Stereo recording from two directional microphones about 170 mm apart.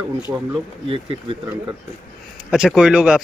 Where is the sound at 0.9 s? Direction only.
35° right (ahead or behind).